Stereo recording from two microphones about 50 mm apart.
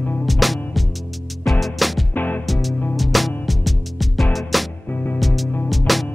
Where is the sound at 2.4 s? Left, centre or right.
Centre.